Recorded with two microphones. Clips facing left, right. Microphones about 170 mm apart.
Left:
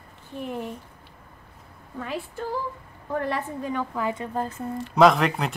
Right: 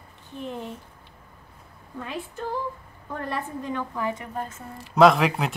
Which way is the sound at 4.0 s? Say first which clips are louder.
Left 2 dB; 25° left (ahead or behind).